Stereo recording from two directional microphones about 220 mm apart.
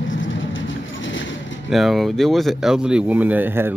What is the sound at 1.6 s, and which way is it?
Speech, centre (ahead or behind).